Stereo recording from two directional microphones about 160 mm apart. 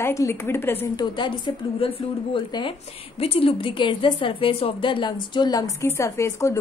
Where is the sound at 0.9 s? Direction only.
30° left (ahead or behind).